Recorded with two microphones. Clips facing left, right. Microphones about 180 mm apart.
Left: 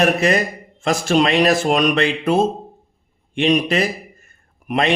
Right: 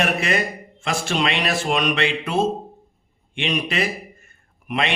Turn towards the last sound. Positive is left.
turn(degrees=40)  # may be behind; listen again after turning